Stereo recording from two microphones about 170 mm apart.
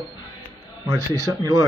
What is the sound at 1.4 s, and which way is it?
Speech, 25° right (ahead or behind).